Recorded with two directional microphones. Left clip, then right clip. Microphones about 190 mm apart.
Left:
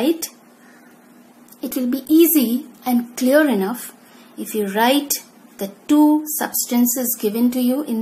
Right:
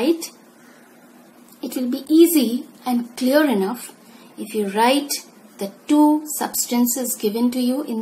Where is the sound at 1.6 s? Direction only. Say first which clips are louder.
Left 2 dB; 20° left (ahead or behind).